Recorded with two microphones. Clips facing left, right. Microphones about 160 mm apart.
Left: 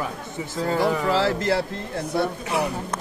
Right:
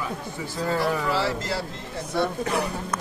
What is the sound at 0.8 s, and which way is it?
Speech, 55° left (ahead or behind).